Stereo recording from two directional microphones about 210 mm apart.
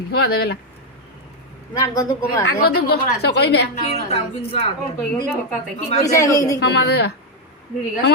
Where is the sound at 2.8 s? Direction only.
50° left (ahead or behind).